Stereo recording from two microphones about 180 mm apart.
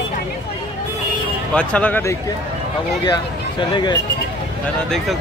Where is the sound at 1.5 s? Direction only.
5° left (ahead or behind).